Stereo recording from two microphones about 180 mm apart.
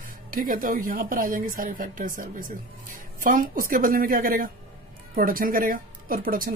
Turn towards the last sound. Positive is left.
turn(degrees=-55)  # may be behind; listen again after turning